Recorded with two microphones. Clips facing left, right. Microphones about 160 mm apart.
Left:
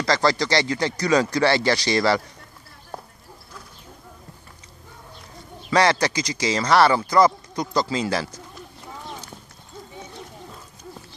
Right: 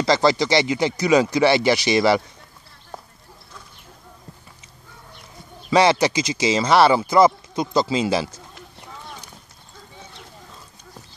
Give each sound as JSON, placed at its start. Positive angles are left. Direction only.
{"t": 0.0, "sound": "speech", "side_deg": -20}
{"t": 5.7, "sound": "speech", "side_deg": -25}